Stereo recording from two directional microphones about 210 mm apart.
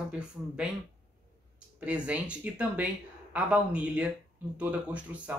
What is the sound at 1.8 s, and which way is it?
Speech, 5° right (ahead or behind).